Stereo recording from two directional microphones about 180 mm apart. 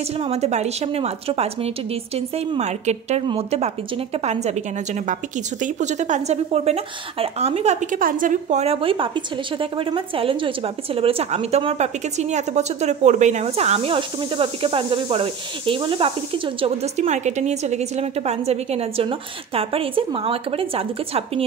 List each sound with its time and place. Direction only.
0.2 s a woman's voice: 35° right (ahead or behind)